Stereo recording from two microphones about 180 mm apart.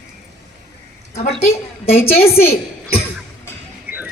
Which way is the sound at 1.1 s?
35° left (ahead or behind).